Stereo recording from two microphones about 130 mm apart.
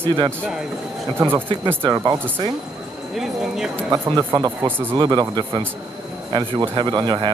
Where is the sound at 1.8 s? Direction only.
35° right (ahead or behind).